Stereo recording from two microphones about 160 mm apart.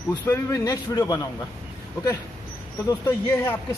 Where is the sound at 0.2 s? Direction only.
20° left (ahead or behind).